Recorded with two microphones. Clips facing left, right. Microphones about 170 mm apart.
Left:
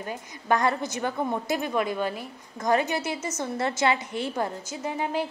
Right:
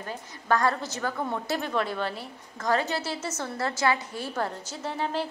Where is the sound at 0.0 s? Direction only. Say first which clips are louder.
Left 2 dB; 15° left (ahead or behind).